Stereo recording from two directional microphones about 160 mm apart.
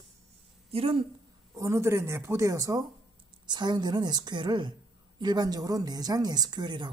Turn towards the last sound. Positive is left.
turn(degrees=-25)  # may be behind; listen again after turning